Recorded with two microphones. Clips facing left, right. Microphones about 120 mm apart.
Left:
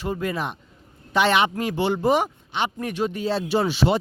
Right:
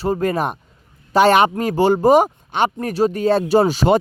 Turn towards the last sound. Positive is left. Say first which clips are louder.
# right 6 dB
turn(degrees=-45)  # may be behind; listen again after turning